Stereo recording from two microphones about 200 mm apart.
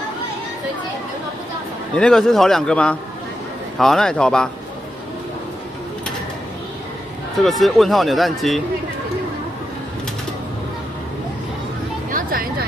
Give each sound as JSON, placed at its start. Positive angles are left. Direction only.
{"t": 2.0, "sound": "speech", "side_deg": 5}
{"t": 7.4, "sound": "speech", "side_deg": 0}
{"t": 12.1, "sound": "vehicle", "side_deg": -45}